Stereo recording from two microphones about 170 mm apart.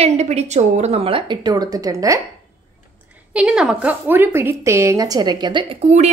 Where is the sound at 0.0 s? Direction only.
40° right (ahead or behind); by 2.1 s 20° right (ahead or behind).